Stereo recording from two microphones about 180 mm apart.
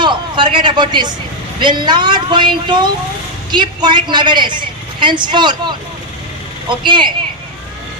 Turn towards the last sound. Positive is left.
turn(degrees=-25)  # may be behind; listen again after turning